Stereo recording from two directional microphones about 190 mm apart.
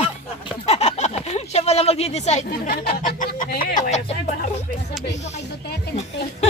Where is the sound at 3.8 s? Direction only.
35° left (ahead or behind).